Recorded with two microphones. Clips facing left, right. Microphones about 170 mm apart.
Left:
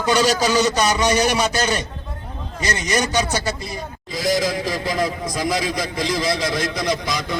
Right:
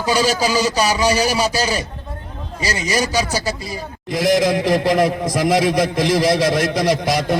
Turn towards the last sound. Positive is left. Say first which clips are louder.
# right 6 dB
turn(degrees=-60)  # may be behind; listen again after turning